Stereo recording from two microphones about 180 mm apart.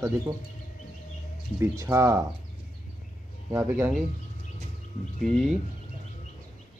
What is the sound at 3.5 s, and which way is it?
Speech, 10° right (ahead or behind).